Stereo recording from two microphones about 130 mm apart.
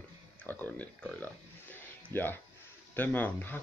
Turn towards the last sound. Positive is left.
turn(degrees=15)  # may be behind; listen again after turning